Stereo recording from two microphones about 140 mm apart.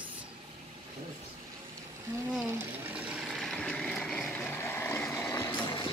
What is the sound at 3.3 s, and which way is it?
Vehicle, centre (ahead or behind).